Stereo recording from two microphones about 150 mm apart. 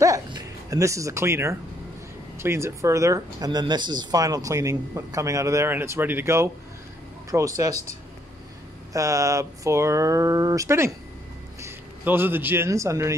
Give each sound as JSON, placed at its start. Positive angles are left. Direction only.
{"t": 0.0, "sound": "speech", "side_deg": -20}
{"t": 8.9, "sound": "a man's voice", "side_deg": -20}